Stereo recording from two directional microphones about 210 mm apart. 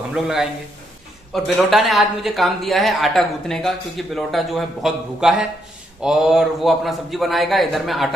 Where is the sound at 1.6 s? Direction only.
Centre (ahead or behind).